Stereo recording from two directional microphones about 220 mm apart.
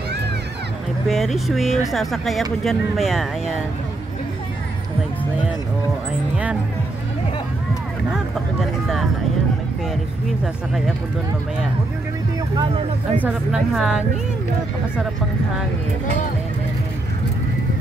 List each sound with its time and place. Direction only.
1.0 s speech: centre (ahead or behind)
6.3 s speech: 5° right (ahead or behind)
8.1 s speech: centre (ahead or behind)
12.5 s speech: 25° right (ahead or behind)
13.2 s speech: 5° right (ahead or behind)